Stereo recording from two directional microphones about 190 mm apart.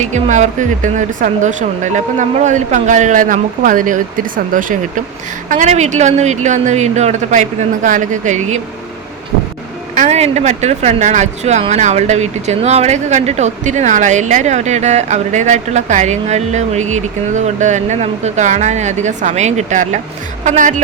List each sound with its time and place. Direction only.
0.0 s speech: 40° right (ahead or behind)
9.9 s speech: 35° right (ahead or behind)